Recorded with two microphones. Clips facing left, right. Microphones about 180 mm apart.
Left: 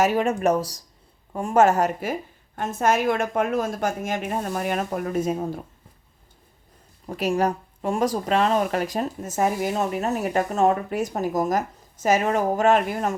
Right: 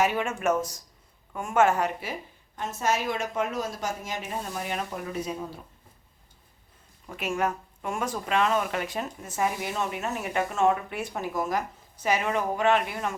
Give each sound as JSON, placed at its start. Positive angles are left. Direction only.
{"t": 0.0, "sound": "a woman's voice", "side_deg": 40}
{"t": 7.1, "sound": "speech", "side_deg": 35}